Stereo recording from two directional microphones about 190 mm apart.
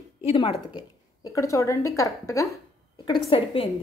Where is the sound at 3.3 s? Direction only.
30° left (ahead or behind).